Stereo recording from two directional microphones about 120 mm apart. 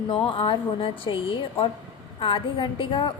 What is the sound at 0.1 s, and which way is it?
A woman's voice, 45° left (ahead or behind).